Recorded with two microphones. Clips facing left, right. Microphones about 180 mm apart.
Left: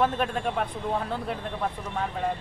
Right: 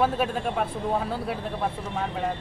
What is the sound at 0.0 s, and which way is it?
A man's voice, 5° right (ahead or behind).